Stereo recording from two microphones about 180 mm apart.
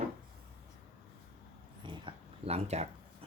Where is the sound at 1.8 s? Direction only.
25° right (ahead or behind).